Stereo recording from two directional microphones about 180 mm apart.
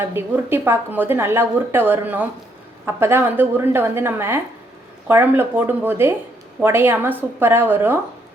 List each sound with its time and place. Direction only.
0.0 s speech: 15° right (ahead or behind)